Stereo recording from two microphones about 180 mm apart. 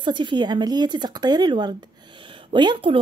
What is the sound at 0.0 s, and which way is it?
Speech, 25° right (ahead or behind).